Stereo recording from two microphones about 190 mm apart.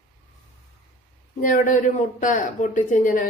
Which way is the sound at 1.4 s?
45° left (ahead or behind).